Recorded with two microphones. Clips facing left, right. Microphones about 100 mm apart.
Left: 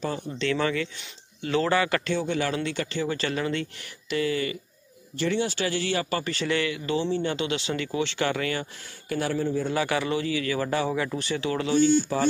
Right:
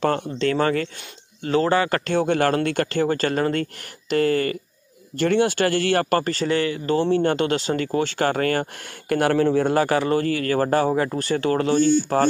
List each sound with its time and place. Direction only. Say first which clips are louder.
0.0 s speech: right 9 dB; 70° right (ahead or behind)
0.4 s speech: right 3 dB; 45° right (ahead or behind)
2.1 s speech: right 7 dB; 55° right (ahead or behind); by 7.0 s 35° right (ahead or behind)
7.0 s speech: right 8 dB; 55° right (ahead or behind)
9.1 s speech: right 8 dB; 70° right (ahead or behind)
9.8 s speech: right 6 dB; 40° right (ahead or behind)